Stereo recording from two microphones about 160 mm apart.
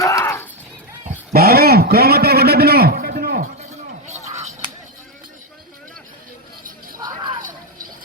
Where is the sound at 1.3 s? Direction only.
75° right (ahead or behind).